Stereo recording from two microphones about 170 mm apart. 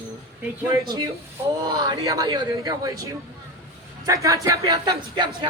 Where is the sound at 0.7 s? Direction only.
25° right (ahead or behind).